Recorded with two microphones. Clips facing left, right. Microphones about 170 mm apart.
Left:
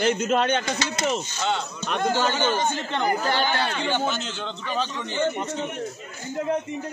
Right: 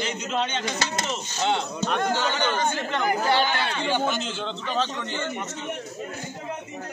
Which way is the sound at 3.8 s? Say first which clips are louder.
Even; 5° right (ahead or behind).